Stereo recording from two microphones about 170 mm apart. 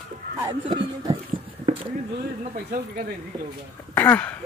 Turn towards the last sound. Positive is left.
turn(degrees=10)  # may be behind; listen again after turning